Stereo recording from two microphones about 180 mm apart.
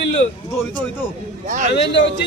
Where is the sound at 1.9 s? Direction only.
80° left.